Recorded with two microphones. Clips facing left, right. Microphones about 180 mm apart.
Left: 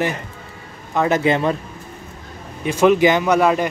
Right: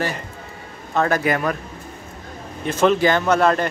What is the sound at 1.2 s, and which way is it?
Speech, 25° left (ahead or behind).